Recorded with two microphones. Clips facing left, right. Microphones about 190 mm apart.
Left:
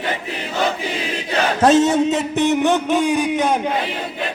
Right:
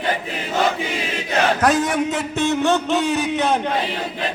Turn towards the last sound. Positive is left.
turn(degrees=15)  # may be behind; listen again after turning